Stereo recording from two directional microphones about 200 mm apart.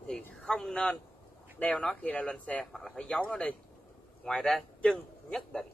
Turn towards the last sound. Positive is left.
turn(degrees=0)  # may be behind; listen again after turning